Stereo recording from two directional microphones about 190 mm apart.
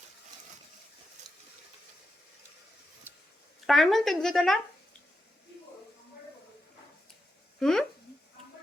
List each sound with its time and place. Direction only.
1.2 s a sound: 40° right (ahead or behind)
3.7 s speech: centre (ahead or behind)
7.6 s speech: 5° left (ahead or behind)